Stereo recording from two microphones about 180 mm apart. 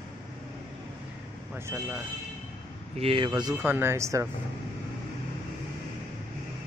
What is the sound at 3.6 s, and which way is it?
Speech, 10° right (ahead or behind).